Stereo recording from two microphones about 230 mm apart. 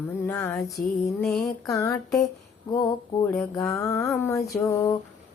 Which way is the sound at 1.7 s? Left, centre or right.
Centre.